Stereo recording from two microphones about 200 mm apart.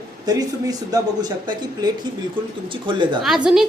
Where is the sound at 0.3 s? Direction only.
20° right (ahead or behind).